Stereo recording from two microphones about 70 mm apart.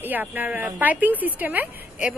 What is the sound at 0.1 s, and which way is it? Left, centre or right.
A woman's voice, right.